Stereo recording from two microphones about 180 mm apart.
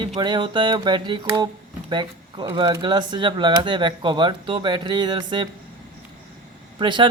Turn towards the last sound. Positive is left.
turn(degrees=-25)  # may be behind; listen again after turning